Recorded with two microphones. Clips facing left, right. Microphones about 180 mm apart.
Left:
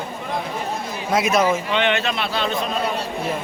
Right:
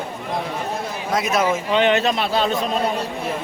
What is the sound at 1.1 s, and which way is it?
Speech, centre (ahead or behind).